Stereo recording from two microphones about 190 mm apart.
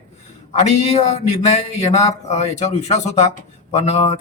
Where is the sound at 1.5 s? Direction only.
35° left (ahead or behind).